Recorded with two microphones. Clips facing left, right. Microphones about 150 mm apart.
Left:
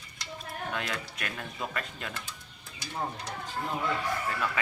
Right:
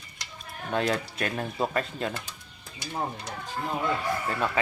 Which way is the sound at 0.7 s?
35° right (ahead or behind).